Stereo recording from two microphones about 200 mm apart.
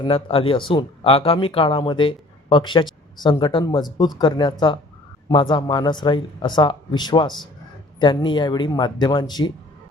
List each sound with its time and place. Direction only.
0.0 s speech: 25° left (ahead or behind)